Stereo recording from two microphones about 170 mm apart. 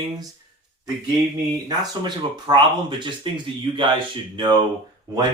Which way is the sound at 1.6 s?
25° right (ahead or behind).